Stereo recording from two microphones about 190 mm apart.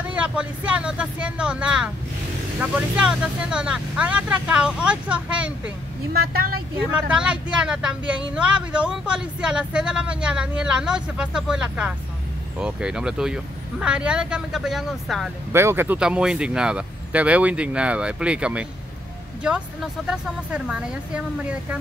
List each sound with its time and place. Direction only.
0.1 s speech: 5° right (ahead or behind)
6.1 s speech: 55° right (ahead or behind)
6.8 s speech: 5° right (ahead or behind)
15.5 s speech: 10° right (ahead or behind)